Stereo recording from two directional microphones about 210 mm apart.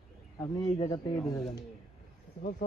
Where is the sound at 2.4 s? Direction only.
40° left (ahead or behind).